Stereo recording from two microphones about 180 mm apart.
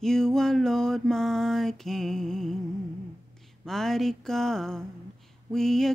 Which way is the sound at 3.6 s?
Centre (ahead or behind).